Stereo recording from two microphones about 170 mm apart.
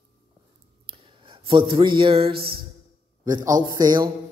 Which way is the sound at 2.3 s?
65° right (ahead or behind).